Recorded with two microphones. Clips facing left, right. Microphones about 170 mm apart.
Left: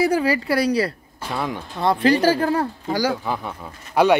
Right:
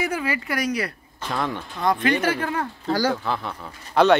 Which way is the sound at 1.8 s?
30° left (ahead or behind).